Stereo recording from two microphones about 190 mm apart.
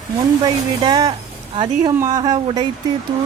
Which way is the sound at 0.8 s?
20° right (ahead or behind).